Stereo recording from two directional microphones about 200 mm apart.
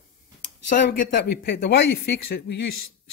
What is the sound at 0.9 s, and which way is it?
Speech, 40° left (ahead or behind).